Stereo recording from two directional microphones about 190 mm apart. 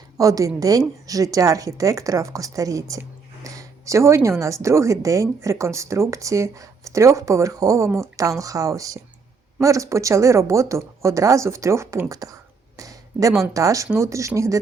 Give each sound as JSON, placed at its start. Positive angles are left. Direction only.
{"t": 0.2, "sound": "a woman's voice", "side_deg": -20}